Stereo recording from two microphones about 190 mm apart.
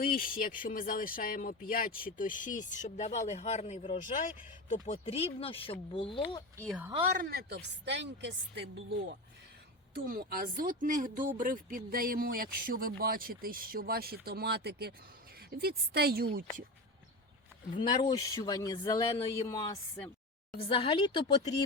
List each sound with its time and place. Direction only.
0.0 s speech: 50° left (ahead or behind); by 6.4 s 30° left (ahead or behind)
7.2 s a woman's voice: 55° right (ahead or behind)
9.9 s speech: 50° right (ahead or behind)
18.0 s speech: 20° left (ahead or behind)
20.6 s speech: 30° left (ahead or behind)